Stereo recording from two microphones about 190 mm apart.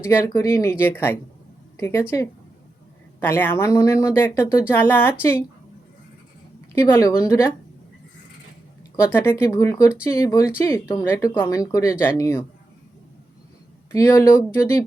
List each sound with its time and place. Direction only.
0.0 s speech: 10° left (ahead or behind)
6.9 s speech: 15° left (ahead or behind)
9.0 s speech: 10° left (ahead or behind)
13.9 s speech: 15° left (ahead or behind)